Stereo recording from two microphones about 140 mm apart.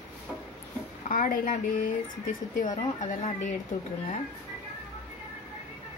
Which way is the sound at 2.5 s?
65° left (ahead or behind).